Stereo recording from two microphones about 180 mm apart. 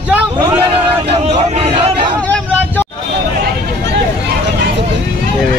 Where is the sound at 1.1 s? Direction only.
30° right (ahead or behind).